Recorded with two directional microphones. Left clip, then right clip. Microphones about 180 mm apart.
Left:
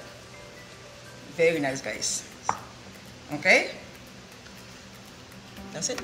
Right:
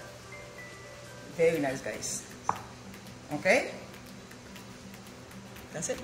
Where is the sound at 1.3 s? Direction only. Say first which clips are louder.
Left 3 dB; 5° left (ahead or behind).